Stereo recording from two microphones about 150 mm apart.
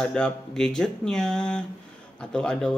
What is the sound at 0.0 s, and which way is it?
Speech, 5° left (ahead or behind).